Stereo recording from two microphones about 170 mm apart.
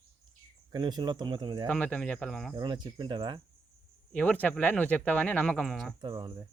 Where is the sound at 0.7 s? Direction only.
25° right (ahead or behind).